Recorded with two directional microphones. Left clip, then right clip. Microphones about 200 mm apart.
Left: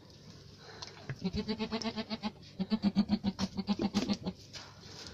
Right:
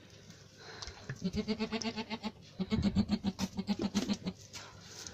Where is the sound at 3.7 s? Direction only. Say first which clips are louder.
Left 2 dB; 20° left (ahead or behind).